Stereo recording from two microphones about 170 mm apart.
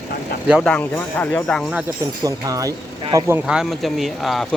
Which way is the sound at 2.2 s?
20° right (ahead or behind).